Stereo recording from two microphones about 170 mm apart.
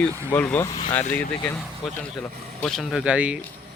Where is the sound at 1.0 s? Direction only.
50° left (ahead or behind).